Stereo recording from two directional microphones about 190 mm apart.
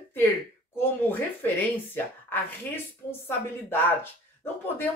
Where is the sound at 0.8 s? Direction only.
10° left (ahead or behind).